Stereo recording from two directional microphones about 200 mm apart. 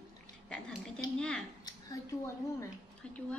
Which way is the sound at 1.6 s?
15° left (ahead or behind).